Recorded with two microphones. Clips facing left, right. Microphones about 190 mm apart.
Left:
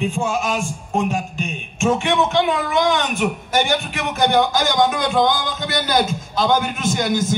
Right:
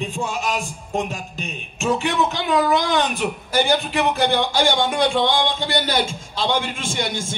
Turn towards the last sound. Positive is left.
turn(degrees=-30)  # may be behind; listen again after turning